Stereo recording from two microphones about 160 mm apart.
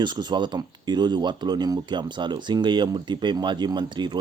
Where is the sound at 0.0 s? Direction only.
25° right (ahead or behind).